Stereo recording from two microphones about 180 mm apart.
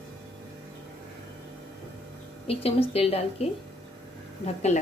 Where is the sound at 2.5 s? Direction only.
35° left (ahead or behind).